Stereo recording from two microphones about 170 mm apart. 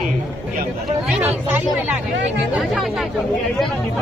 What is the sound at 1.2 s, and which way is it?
Speech, 10° right (ahead or behind).